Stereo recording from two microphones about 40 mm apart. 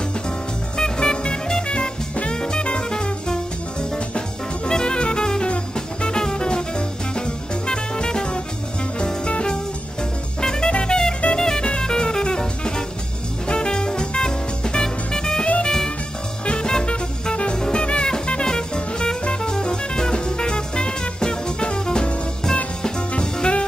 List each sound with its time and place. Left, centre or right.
0.7 s music: centre
4.6 s music: left